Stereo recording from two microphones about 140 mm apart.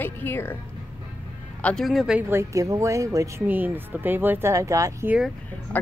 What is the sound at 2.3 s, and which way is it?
Speech, 20° right (ahead or behind).